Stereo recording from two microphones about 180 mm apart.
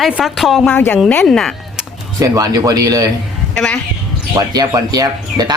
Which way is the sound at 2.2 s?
20° right (ahead or behind).